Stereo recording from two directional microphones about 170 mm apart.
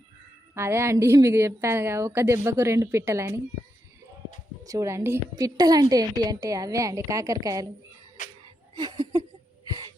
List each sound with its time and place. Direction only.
0.5 s a woman's voice: 15° right (ahead or behind)
4.6 s a woman's voice: 20° right (ahead or behind)
8.7 s laughter: 25° right (ahead or behind)
9.6 s a sound: 20° right (ahead or behind)